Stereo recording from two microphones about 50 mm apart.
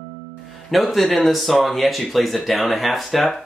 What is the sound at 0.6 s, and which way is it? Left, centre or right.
Speech, centre.